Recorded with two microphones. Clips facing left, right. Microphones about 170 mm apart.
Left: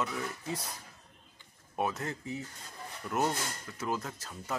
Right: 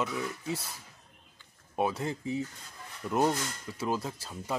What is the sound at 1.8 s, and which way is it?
Speech, 15° right (ahead or behind).